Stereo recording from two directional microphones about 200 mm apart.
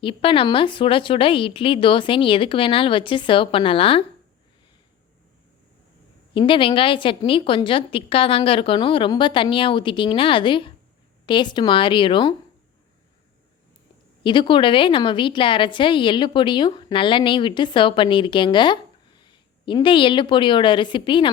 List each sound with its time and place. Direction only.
0.0 s a woman's voice: 25° left (ahead or behind)
6.3 s a woman's voice: 25° left (ahead or behind)
14.3 s a woman's voice: 25° left (ahead or behind)